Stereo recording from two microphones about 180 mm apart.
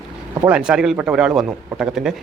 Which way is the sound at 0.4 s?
5° right (ahead or behind).